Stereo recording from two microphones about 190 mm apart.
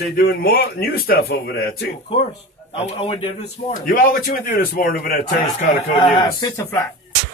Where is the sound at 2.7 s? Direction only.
30° left (ahead or behind).